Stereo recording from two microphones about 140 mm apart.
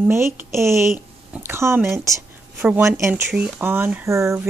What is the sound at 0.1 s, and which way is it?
Speech, 20° right (ahead or behind).